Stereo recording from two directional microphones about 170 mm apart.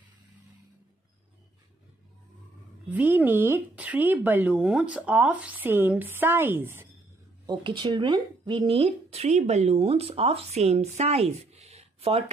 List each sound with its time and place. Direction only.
2.9 s speech: 10° right (ahead or behind)
7.4 s speech: 30° right (ahead or behind)